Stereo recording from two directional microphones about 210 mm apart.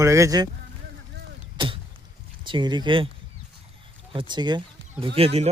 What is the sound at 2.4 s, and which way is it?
Speech, 20° right (ahead or behind).